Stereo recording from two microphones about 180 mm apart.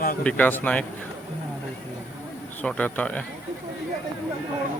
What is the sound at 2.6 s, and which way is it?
Speech, 5° left (ahead or behind).